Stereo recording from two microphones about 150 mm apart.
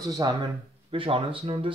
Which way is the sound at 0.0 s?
25° right (ahead or behind).